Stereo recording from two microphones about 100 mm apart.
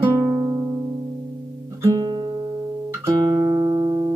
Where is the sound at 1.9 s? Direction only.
50° right (ahead or behind).